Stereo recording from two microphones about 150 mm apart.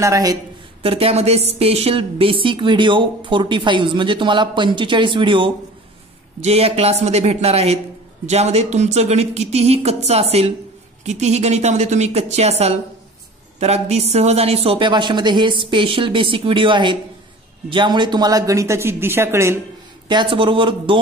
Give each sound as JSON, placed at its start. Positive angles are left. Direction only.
{"t": 0.0, "sound": "speech", "side_deg": -25}
{"t": 0.8, "sound": "a woman's voice", "side_deg": -40}
{"t": 20.1, "sound": "a woman's voice", "side_deg": -30}